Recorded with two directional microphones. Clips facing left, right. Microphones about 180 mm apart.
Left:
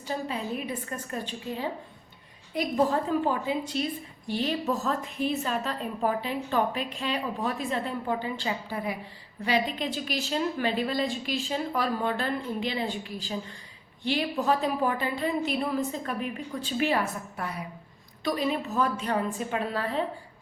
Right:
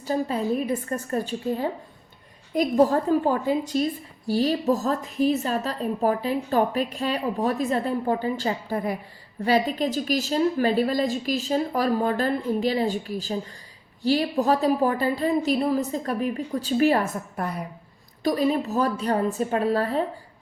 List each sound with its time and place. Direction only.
0.0 s a woman's voice: 40° right (ahead or behind)